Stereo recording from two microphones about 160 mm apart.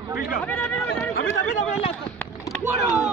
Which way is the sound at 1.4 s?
50° left (ahead or behind).